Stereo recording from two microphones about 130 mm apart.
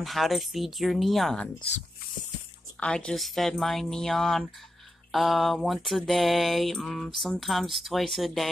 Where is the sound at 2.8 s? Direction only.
5° left (ahead or behind).